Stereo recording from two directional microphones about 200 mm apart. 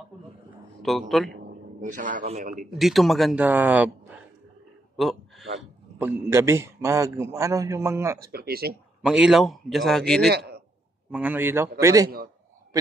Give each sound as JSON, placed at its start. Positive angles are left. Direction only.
{"t": 0.8, "sound": "speech", "side_deg": 0}
{"t": 1.4, "sound": "a man's voice", "side_deg": -40}
{"t": 2.5, "sound": "speech", "side_deg": 0}
{"t": 5.9, "sound": "a man's voice", "side_deg": -10}
{"t": 8.2, "sound": "speech", "side_deg": -50}
{"t": 9.0, "sound": "speech", "side_deg": -5}
{"t": 10.3, "sound": "a man's voice", "side_deg": -55}
{"t": 11.1, "sound": "a man's voice", "side_deg": -10}